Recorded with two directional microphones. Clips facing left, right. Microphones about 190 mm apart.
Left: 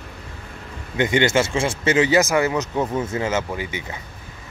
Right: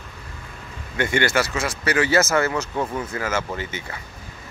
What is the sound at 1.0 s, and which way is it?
Speech, 20° left (ahead or behind).